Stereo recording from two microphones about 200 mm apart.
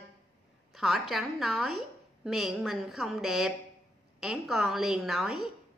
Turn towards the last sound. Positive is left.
turn(degrees=0)  # may be behind; listen again after turning